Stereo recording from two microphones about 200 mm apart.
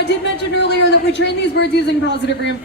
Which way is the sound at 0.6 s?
60° left (ahead or behind).